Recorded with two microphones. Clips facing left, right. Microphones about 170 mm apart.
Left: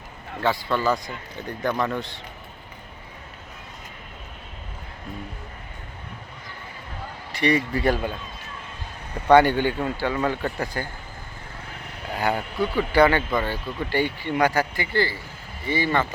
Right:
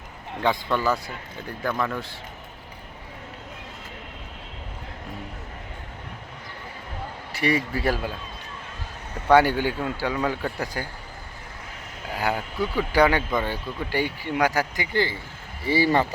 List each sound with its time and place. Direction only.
0.4 s speech: 15° right (ahead or behind)
7.3 s speech: 5° right (ahead or behind)
9.3 s speech: 5° right (ahead or behind)
12.1 s speech: 10° right (ahead or behind)
15.6 s speech: 35° right (ahead or behind)